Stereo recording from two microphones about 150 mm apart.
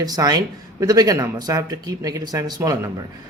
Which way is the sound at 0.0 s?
25° right (ahead or behind).